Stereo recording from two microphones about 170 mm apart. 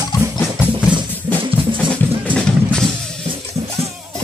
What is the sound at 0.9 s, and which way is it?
Music, 30° right (ahead or behind).